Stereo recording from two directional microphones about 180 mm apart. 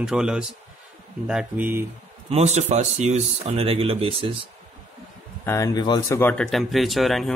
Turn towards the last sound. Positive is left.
turn(degrees=0)  # may be behind; listen again after turning